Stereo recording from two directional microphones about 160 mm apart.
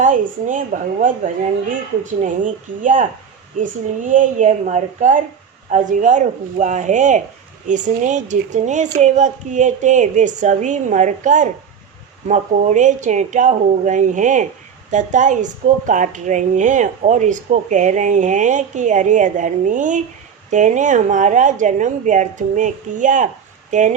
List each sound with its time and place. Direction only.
0.0 s speech: 50° right (ahead or behind)
2.2 s speech: 55° right (ahead or behind)
4.1 s speech: 50° right (ahead or behind)